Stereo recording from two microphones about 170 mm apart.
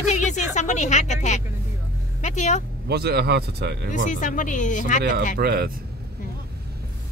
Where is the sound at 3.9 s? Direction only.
45° left (ahead or behind).